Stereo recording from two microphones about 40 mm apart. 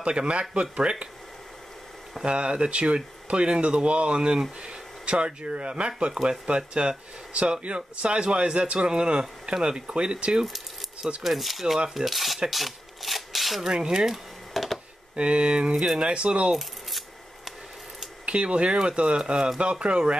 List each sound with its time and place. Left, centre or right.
0.0 s speech: right
2.2 s speech: right
11.2 s speech: centre
12.4 s a sound: centre
13.6 s speech: centre
14.1 s a sound: centre
15.1 s speech: right
18.2 s speech: right